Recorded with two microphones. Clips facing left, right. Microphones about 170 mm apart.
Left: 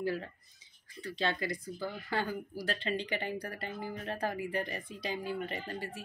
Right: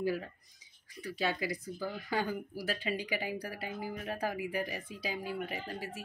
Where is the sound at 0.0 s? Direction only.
10° right (ahead or behind).